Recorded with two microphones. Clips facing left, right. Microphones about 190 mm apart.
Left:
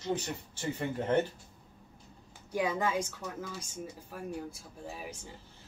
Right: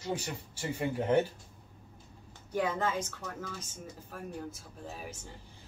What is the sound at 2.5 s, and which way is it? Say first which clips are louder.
A woman's voice: left 1 dB; 10° left (ahead or behind).